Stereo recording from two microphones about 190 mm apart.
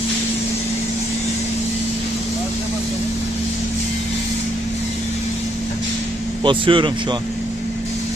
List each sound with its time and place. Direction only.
6.4 s speech: 25° right (ahead or behind)